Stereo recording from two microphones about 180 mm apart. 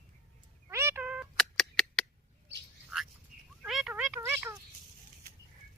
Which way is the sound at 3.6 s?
5° right (ahead or behind).